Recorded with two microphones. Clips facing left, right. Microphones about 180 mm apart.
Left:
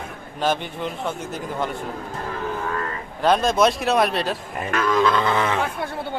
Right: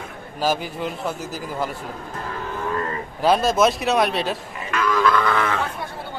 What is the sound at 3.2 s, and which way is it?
Speech, 5° right (ahead or behind).